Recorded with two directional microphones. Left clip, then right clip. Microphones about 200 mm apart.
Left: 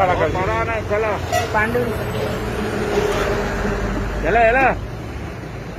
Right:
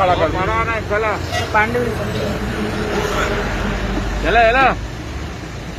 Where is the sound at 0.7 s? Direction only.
10° right (ahead or behind).